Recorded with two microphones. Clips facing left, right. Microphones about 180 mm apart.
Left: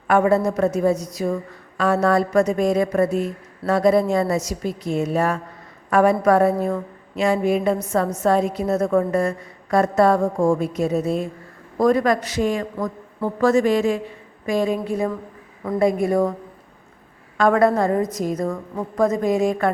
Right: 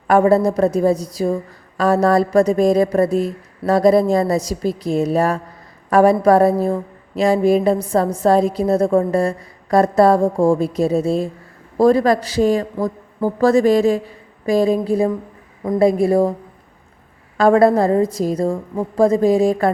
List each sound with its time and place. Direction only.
0.1 s a woman's voice: 35° right (ahead or behind)
17.3 s a woman's voice: 35° right (ahead or behind)